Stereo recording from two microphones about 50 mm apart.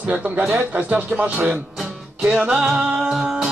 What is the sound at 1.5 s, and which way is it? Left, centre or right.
Music, centre.